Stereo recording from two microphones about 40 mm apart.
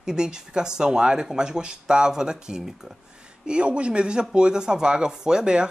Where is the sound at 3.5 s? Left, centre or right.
Right.